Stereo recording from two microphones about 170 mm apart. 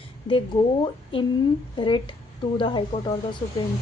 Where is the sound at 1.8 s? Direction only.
30° left (ahead or behind).